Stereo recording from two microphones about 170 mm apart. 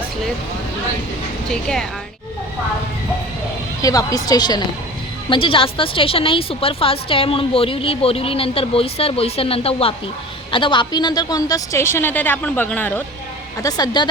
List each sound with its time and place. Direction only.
1.5 s speech: 5° left (ahead or behind)
3.8 s a woman's voice: 20° left (ahead or behind)
13.6 s a woman's voice: 20° left (ahead or behind)